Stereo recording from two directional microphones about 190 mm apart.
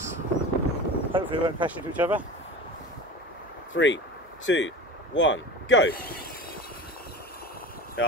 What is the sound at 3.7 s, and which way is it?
Speech, 75° left (ahead or behind).